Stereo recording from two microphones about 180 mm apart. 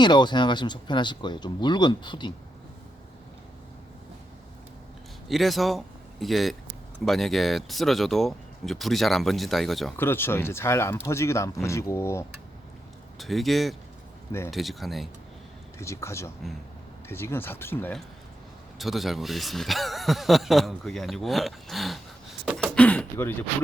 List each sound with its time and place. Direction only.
0.0 s speech: 25° left (ahead or behind)
5.3 s speech: centre (ahead or behind)
10.0 s speech: 10° left (ahead or behind)
13.1 s speech: centre (ahead or behind)
15.8 s speech: 15° left (ahead or behind)
18.8 s speech: centre (ahead or behind)
22.7 s a sound: 5° left (ahead or behind)